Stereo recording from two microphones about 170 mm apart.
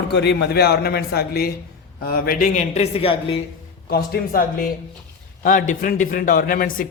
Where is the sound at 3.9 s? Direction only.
60° left (ahead or behind).